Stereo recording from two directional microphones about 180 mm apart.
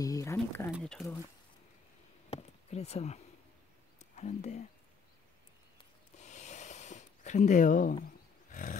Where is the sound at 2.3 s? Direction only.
35° left (ahead or behind).